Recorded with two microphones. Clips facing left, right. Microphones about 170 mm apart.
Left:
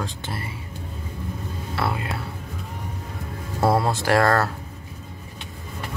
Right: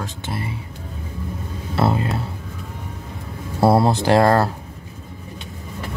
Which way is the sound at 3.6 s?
30° right (ahead or behind).